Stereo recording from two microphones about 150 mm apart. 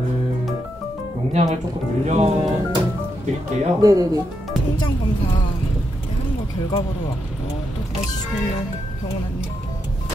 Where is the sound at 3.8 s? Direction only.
25° right (ahead or behind).